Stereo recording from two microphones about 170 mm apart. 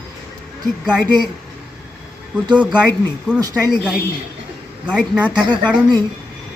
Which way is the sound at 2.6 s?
5° right (ahead or behind).